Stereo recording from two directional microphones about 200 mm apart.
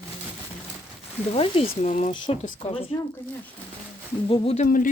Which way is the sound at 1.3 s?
30° left (ahead or behind).